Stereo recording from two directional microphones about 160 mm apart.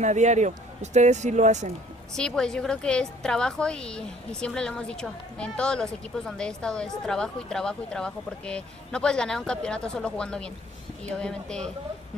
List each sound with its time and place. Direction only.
0.0 s speech: 45° right (ahead or behind)
2.1 s a woman's voice: 5° left (ahead or behind)